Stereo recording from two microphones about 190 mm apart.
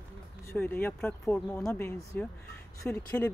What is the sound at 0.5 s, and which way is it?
Speech, 10° left (ahead or behind).